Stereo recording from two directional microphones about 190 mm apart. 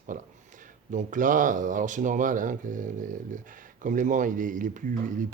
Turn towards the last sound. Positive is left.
turn(degrees=-45)  # may be behind; listen again after turning